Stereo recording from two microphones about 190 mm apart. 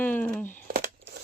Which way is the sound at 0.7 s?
55° right (ahead or behind).